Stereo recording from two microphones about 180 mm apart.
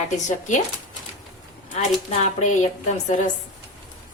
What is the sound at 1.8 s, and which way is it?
Speech, 40° left (ahead or behind).